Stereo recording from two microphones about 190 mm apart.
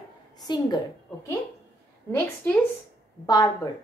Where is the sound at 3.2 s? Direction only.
20° left (ahead or behind).